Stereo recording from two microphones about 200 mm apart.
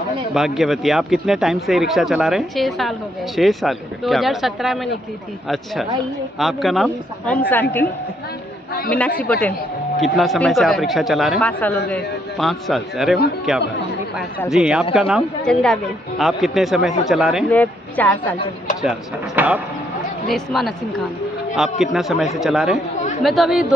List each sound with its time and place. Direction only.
0.3 s speech: centre (ahead or behind)
6.3 s speech: centre (ahead or behind)
9.2 s a woman's voice: 10° left (ahead or behind)
17.5 s a woman's voice: 10° left (ahead or behind)
18.8 s speech: 5° right (ahead or behind)